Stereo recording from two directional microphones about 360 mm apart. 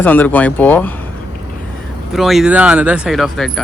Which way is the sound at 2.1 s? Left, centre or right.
Centre.